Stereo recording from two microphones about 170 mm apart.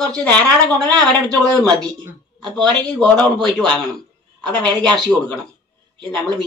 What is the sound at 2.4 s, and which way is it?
A man's voice, 5° left (ahead or behind).